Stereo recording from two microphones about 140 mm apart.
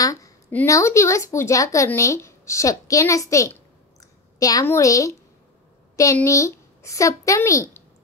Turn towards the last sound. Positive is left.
turn(degrees=20)  # may be behind; listen again after turning